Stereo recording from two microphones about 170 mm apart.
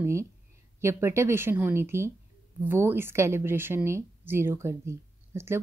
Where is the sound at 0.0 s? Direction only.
15° right (ahead or behind).